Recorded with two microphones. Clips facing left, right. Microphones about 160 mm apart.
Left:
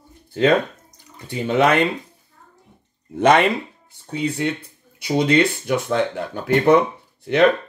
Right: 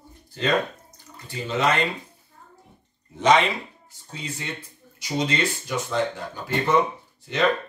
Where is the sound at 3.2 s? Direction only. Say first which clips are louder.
Left 4 dB; 60° left (ahead or behind).